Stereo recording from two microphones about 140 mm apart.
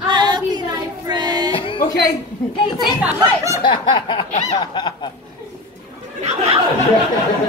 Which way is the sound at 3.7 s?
35° left (ahead or behind).